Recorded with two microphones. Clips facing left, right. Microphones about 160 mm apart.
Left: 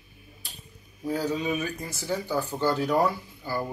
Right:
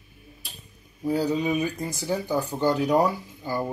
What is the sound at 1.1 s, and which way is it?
Speech, 15° right (ahead or behind).